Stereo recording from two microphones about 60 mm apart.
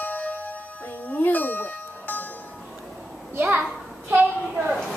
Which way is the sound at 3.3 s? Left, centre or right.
Right.